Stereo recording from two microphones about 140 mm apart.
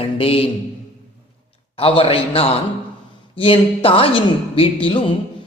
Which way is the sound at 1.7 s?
40° left (ahead or behind).